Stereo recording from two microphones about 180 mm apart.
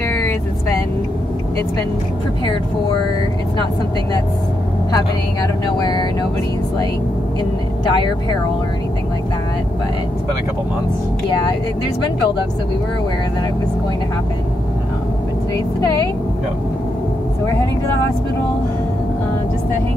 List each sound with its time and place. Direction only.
0.1 s vehicle: 10° left (ahead or behind)
4.9 s speech: 20° left (ahead or behind)
7.8 s speech: 25° left (ahead or behind)